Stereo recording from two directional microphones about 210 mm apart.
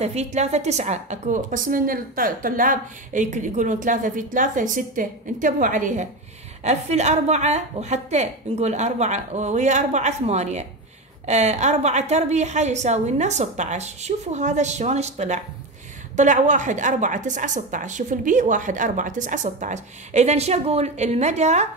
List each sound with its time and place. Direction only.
0.0 s a woman's voice: 30° right (ahead or behind)